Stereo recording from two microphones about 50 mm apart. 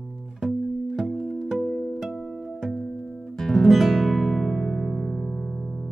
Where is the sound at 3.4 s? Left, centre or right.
Centre.